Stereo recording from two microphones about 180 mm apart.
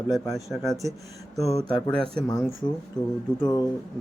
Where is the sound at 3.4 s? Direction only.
20° left (ahead or behind).